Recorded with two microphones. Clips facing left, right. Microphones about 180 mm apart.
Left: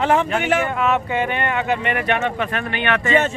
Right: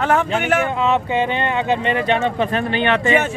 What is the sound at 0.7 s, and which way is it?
Speech, 25° right (ahead or behind).